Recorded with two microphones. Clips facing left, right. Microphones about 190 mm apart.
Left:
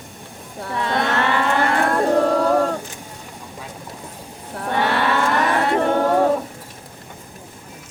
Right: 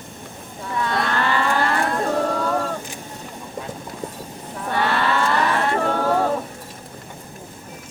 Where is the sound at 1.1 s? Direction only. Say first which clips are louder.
Left 2 dB; 75° left (ahead or behind).